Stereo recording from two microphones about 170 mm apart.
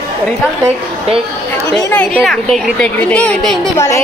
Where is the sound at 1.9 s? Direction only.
10° left (ahead or behind).